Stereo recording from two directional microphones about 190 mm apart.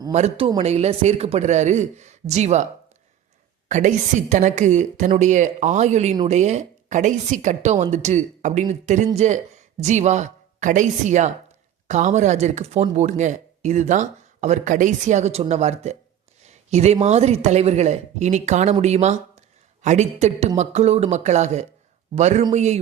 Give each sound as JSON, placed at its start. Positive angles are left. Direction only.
{"t": 0.1, "sound": "speech", "side_deg": -35}
{"t": 3.7, "sound": "a woman's voice", "side_deg": -40}